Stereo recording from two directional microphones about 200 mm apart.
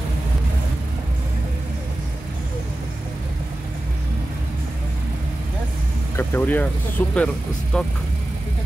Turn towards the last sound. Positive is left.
turn(degrees=5)  # may be behind; listen again after turning